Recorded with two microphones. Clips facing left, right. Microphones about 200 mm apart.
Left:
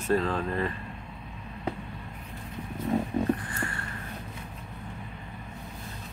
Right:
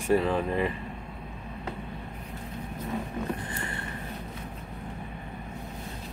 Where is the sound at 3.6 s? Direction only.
20° right (ahead or behind).